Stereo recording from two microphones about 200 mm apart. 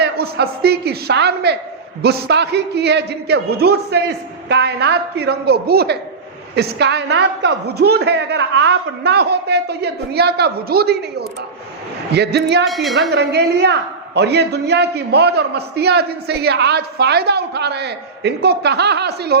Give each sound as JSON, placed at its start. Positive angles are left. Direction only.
{"t": 0.0, "sound": "a man's voice", "side_deg": -55}
{"t": 12.6, "sound": "speech", "side_deg": 0}
{"t": 13.1, "sound": "a man's voice", "side_deg": -55}